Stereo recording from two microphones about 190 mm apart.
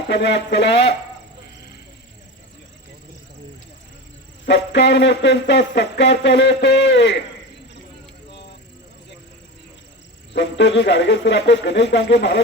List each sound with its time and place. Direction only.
0.1 s speech: 65° left (ahead or behind)
4.4 s speech: 65° left (ahead or behind)
10.3 s speech: 65° left (ahead or behind)